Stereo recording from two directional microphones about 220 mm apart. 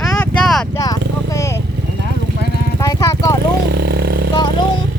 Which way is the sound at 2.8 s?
15° left (ahead or behind).